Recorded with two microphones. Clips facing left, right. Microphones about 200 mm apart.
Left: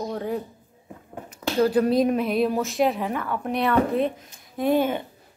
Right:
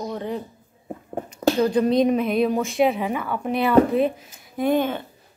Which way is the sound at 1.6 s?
5° left (ahead or behind).